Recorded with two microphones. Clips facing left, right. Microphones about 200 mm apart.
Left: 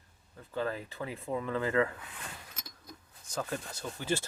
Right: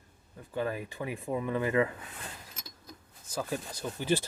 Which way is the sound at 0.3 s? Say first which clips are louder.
Right 2 dB; 15° right (ahead or behind).